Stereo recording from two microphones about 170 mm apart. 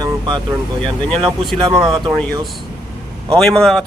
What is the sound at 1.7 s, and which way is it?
Speech, centre (ahead or behind).